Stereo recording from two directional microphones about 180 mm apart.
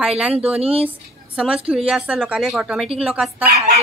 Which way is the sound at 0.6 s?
35° right (ahead or behind).